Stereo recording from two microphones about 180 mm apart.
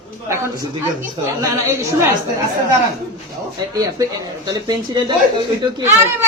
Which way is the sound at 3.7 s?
20° right (ahead or behind).